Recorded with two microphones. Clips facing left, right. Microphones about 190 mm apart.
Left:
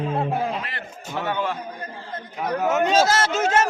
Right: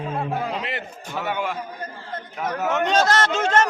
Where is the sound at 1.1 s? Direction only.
10° right (ahead or behind).